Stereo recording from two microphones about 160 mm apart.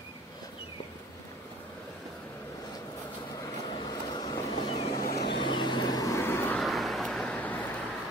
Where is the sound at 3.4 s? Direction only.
30° left (ahead or behind).